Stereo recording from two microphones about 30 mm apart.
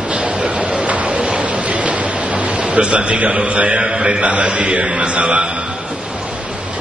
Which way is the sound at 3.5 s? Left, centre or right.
Right.